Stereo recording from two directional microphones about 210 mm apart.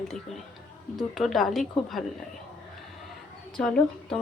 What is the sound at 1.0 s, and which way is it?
A woman's voice, centre (ahead or behind).